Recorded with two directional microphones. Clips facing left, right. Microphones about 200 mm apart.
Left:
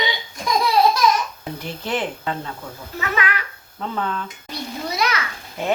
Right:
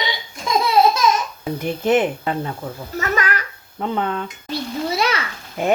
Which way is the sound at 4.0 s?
20° right (ahead or behind).